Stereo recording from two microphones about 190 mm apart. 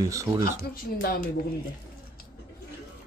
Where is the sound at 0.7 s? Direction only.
50° left (ahead or behind).